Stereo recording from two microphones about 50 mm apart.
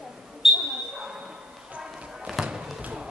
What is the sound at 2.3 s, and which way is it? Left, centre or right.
Basketball bounce, centre.